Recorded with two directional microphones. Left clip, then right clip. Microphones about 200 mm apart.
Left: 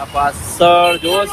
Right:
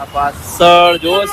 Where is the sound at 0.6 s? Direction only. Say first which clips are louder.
Right 3 dB; 20° right (ahead or behind).